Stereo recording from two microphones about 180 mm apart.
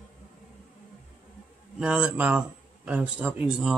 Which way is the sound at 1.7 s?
5° right (ahead or behind).